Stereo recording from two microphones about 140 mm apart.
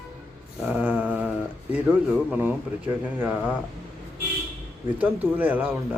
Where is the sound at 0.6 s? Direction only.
10° right (ahead or behind).